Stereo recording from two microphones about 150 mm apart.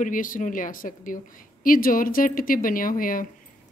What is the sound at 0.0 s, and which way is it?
A woman's voice, 65° left (ahead or behind).